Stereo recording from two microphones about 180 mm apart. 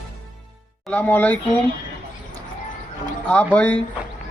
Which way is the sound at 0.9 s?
10° left (ahead or behind).